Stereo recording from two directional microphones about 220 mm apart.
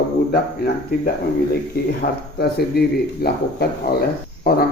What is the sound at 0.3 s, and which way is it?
Speech, 45° left (ahead or behind).